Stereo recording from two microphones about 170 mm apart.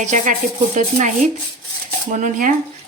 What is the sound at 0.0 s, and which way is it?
Speech, 45° right (ahead or behind).